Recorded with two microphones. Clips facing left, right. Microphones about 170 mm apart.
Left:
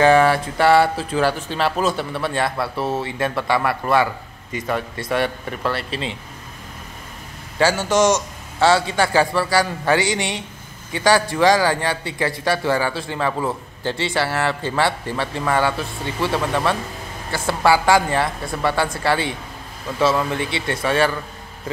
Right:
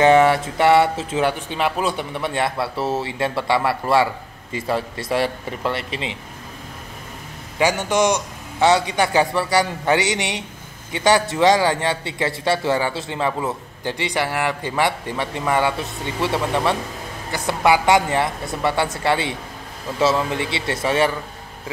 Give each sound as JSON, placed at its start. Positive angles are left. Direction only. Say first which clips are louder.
{"t": 0.0, "sound": "a man's voice", "louder": "right 1 dB", "side_deg": -25}
{"t": 7.5, "sound": "a man's voice", "louder": "left 1 dB", "side_deg": -15}